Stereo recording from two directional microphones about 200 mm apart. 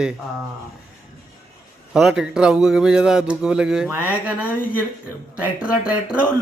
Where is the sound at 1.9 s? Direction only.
Centre (ahead or behind).